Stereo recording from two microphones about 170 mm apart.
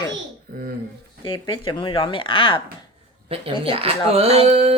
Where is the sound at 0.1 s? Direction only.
60° right (ahead or behind).